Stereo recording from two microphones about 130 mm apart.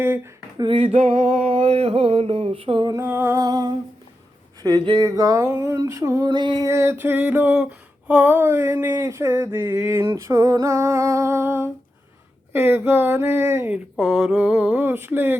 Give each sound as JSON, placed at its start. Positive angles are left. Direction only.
{"t": 0.0, "sound": "speech", "side_deg": -20}
{"t": 0.5, "sound": "a sound", "side_deg": -35}
{"t": 3.0, "sound": "speech", "side_deg": -15}
{"t": 3.4, "sound": "female singing", "side_deg": -30}
{"t": 6.3, "sound": "a sound", "side_deg": -35}
{"t": 6.7, "sound": "female singing", "side_deg": -20}
{"t": 12.5, "sound": "speech", "side_deg": -15}
{"t": 13.9, "sound": "speech", "side_deg": -5}